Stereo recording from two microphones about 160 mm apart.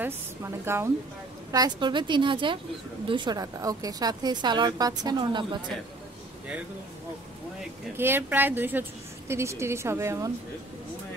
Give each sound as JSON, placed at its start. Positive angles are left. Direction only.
{"t": 0.0, "sound": "a woman's voice", "side_deg": -15}
{"t": 1.5, "sound": "a woman's voice", "side_deg": -25}
{"t": 8.0, "sound": "a woman's voice", "side_deg": -15}